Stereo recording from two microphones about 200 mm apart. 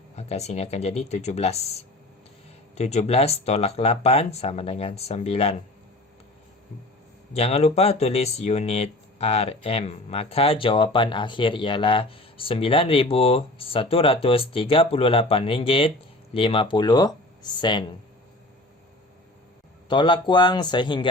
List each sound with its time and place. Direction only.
0.2 s speech: 30° left (ahead or behind)
7.3 s speech: 30° left (ahead or behind)
19.9 s speech: 25° left (ahead or behind)